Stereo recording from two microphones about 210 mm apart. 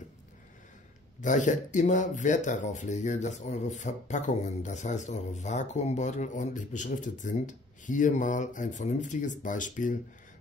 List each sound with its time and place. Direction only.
1.2 s speech: 35° left (ahead or behind)